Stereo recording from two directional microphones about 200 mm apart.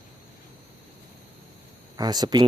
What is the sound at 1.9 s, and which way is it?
Speech, 20° right (ahead or behind).